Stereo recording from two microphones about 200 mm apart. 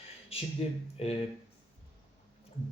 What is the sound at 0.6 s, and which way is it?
Speech, 30° left (ahead or behind).